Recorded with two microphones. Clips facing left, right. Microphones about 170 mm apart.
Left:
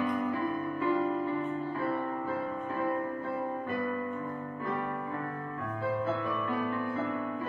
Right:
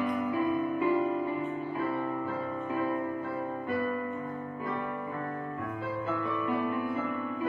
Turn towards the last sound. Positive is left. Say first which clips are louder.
# right 2 dB
turn(degrees=-15)  # may be behind; listen again after turning